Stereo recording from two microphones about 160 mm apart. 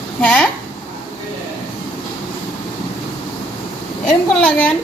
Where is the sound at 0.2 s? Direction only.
10° left (ahead or behind).